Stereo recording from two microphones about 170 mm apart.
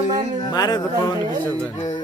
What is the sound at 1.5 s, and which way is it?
Speech, 10° left (ahead or behind).